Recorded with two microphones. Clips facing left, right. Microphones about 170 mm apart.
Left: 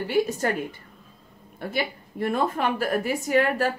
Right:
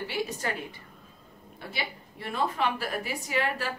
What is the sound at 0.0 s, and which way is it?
A woman's voice, 50° left (ahead or behind).